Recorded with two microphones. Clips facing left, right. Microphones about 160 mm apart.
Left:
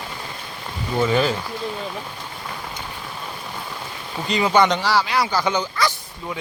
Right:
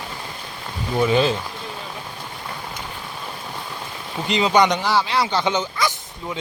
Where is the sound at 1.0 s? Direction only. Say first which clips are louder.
Right 2 dB; 20° right (ahead or behind).